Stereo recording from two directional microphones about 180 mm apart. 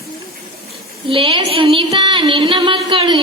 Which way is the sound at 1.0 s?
30° right (ahead or behind).